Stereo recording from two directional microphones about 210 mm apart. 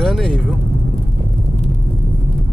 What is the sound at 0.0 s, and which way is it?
Speech, centre (ahead or behind).